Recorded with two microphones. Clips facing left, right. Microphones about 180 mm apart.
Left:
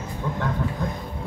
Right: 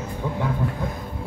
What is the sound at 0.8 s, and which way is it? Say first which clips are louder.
Music: left 1 dB; 10° right (ahead or behind).